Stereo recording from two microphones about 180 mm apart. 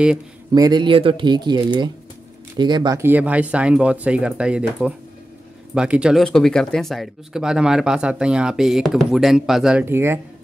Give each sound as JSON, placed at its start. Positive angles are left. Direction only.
{"t": 0.5, "sound": "speech", "side_deg": -25}
{"t": 3.0, "sound": "speech", "side_deg": -10}